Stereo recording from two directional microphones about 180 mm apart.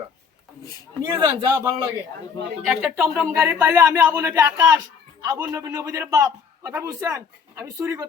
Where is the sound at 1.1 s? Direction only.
20° right (ahead or behind).